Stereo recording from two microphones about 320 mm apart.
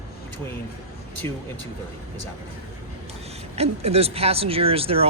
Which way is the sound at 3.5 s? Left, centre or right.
Centre.